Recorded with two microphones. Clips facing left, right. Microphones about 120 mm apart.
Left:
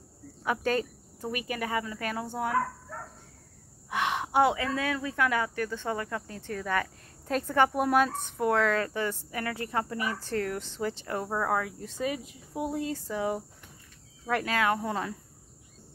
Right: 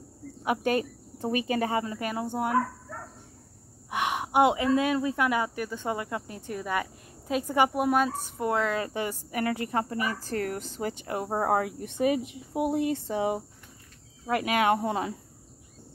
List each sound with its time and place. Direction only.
0.4 s speech: 15° right (ahead or behind)
1.1 s speech: 30° right (ahead or behind)
2.0 s speech: 15° right (ahead or behind)
3.9 s speech: 15° right (ahead or behind)
8.8 s speech: 15° right (ahead or behind)
9.7 s speech: 35° right (ahead or behind)
9.9 s speech: centre (ahead or behind)
10.2 s speech: 40° right (ahead or behind)
11.0 s speech: 15° right (ahead or behind)
11.2 s speech: 30° right (ahead or behind)